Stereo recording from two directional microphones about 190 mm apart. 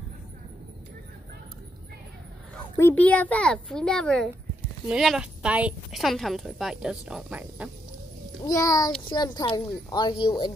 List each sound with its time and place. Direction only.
2.5 s a woman's voice: 10° left (ahead or behind); by 7.7 s 5° right (ahead or behind)
8.5 s a woman's voice: 20° left (ahead or behind)